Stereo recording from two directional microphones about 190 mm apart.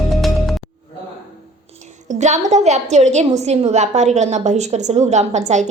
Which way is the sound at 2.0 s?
40° right (ahead or behind).